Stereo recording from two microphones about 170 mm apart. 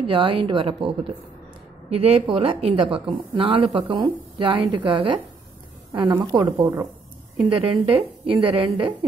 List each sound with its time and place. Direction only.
0.1 s a woman's voice: 30° right (ahead or behind)